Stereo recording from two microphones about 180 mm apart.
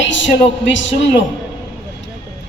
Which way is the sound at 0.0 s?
90° left.